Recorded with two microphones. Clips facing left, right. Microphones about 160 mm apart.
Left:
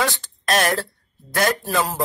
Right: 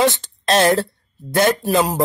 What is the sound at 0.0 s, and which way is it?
Speech, 20° right (ahead or behind).